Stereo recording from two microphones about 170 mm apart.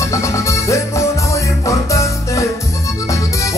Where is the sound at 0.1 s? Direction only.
15° left (ahead or behind).